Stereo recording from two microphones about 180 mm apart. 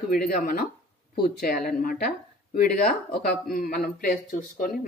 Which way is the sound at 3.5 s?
50° left (ahead or behind).